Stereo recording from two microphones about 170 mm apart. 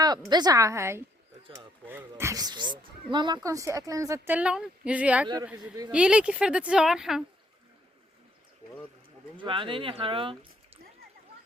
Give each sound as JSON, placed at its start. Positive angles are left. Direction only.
{"t": 0.0, "sound": "a woman's voice", "side_deg": -25}
{"t": 9.4, "sound": "speech", "side_deg": -30}